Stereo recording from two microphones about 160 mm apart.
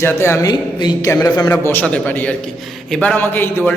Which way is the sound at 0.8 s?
25° left (ahead or behind).